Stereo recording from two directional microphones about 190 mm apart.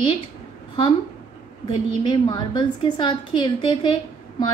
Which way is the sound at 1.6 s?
25° left (ahead or behind).